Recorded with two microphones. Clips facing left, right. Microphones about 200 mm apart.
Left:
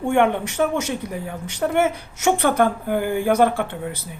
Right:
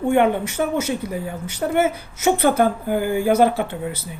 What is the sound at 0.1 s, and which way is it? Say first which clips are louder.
Speech: right 1 dB; 5° right (ahead or behind).